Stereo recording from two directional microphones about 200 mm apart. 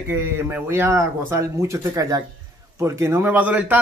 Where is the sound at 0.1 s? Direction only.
10° right (ahead or behind).